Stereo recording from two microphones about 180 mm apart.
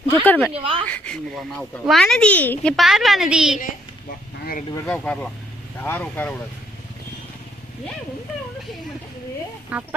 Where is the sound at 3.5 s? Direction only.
50° left (ahead or behind).